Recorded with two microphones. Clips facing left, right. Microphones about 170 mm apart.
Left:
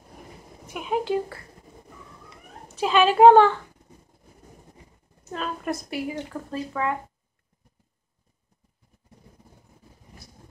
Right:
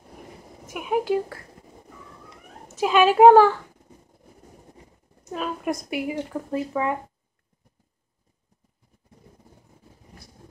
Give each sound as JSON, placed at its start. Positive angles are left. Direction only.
{"t": 0.7, "sound": "a woman's voice", "side_deg": -10}
{"t": 2.8, "sound": "a woman's voice", "side_deg": -10}
{"t": 5.3, "sound": "a woman's voice", "side_deg": -10}